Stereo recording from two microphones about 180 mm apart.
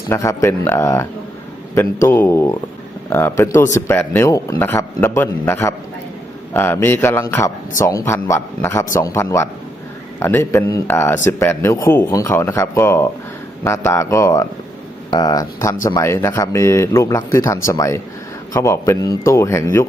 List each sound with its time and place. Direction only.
0.1 s speech: 15° left (ahead or behind)